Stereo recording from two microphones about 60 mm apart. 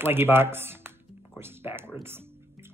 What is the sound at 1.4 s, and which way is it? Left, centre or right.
Music, right.